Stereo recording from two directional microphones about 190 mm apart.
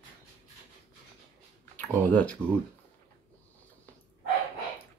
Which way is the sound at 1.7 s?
10° left (ahead or behind).